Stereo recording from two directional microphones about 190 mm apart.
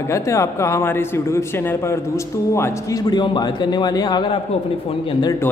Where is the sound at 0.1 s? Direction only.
15° left (ahead or behind).